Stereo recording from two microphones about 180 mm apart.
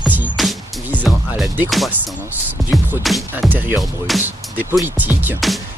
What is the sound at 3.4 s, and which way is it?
Speech, 10° right (ahead or behind).